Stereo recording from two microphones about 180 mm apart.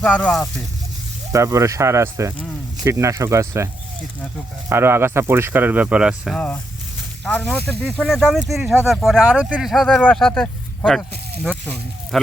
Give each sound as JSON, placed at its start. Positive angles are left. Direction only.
{"t": 0.0, "sound": "speech", "side_deg": 5}
{"t": 1.3, "sound": "speech", "side_deg": -15}
{"t": 4.7, "sound": "speech", "side_deg": -15}
{"t": 12.1, "sound": "speech", "side_deg": 0}